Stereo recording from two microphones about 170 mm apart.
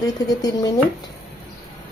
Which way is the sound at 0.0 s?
20° left (ahead or behind).